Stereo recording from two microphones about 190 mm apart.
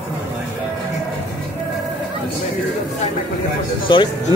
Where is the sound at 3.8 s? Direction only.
25° left (ahead or behind).